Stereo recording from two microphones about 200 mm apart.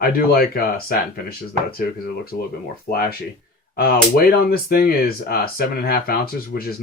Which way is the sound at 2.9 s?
50° left (ahead or behind).